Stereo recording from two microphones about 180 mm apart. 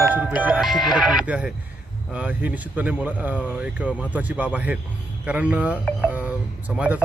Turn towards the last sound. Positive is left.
turn(degrees=-10)  # may be behind; listen again after turning